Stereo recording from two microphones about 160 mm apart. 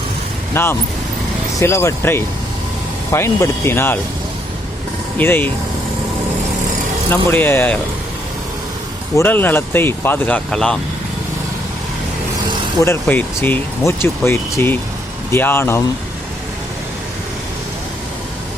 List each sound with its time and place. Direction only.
0.5 s speech: 15° left (ahead or behind)
5.1 s speech: 10° left (ahead or behind)
7.1 s speech: 15° left (ahead or behind)
9.1 s speech: 10° left (ahead or behind)
12.8 s speech: 15° left (ahead or behind)